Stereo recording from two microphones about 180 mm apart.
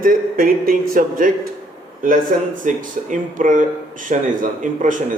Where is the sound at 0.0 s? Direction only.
50° right (ahead or behind).